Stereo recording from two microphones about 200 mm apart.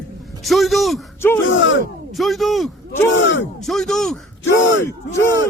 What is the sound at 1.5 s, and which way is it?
Speech, 70° left (ahead or behind).